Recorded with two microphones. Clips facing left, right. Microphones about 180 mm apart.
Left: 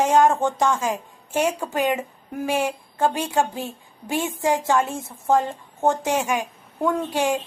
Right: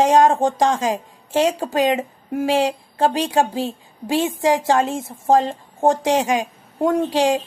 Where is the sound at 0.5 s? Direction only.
90° right.